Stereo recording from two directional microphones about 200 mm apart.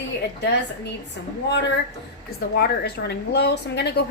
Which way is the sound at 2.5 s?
55° left (ahead or behind).